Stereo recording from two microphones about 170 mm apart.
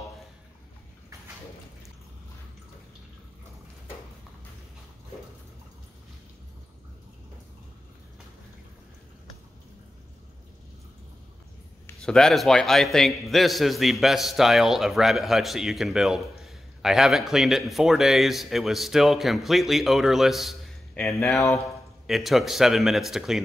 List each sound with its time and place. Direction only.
11.8 s a man's voice: 5° left (ahead or behind)
21.4 s speech: 20° left (ahead or behind)
22.0 s a man's voice: centre (ahead or behind)